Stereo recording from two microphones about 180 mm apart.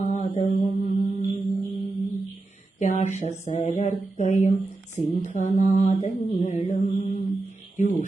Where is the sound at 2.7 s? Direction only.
40° left (ahead or behind).